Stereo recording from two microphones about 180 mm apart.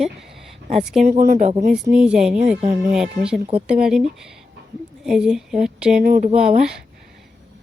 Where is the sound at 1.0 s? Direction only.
40° right (ahead or behind).